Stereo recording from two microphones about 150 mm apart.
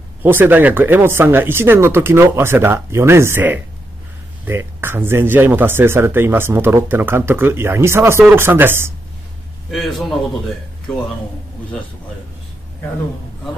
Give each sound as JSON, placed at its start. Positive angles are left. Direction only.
{"t": 0.2, "sound": "speech", "side_deg": -15}
{"t": 9.7, "sound": "a man's voice", "side_deg": 0}